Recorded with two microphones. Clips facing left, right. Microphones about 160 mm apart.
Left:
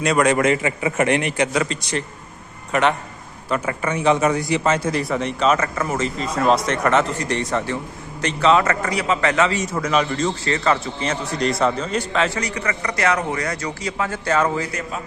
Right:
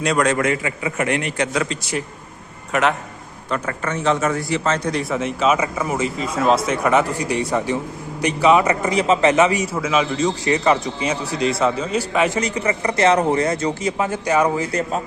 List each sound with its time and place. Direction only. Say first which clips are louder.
0.0 s a man's voice: left 1 dB; centre (ahead or behind)
0.3 s a man's voice: left 2 dB; 25° left (ahead or behind)
1.4 s a man's voice: left 1 dB; centre (ahead or behind)
3.5 s a man's voice: left 1 dB; 10° left (ahead or behind); by 9.6 s 15° right (ahead or behind)
9.7 s a man's voice: right 1 dB; 5° right (ahead or behind)
11.3 s a man's voice: even; 5° right (ahead or behind)
14.7 s a man's voice: right 6 dB; 35° right (ahead or behind)